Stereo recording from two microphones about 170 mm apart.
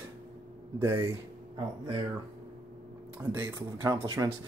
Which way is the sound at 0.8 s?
15° right (ahead or behind).